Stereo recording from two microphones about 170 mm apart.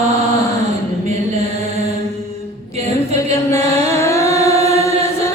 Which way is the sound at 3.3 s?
20° left (ahead or behind).